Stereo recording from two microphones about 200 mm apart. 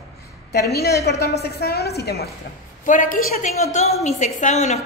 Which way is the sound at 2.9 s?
40° left (ahead or behind).